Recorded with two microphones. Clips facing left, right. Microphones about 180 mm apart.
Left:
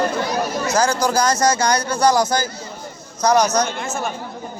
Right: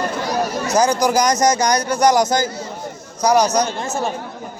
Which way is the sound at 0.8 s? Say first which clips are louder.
Right 3 dB; 15° right (ahead or behind).